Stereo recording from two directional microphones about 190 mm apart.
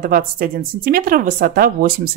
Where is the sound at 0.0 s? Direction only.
50° right (ahead or behind).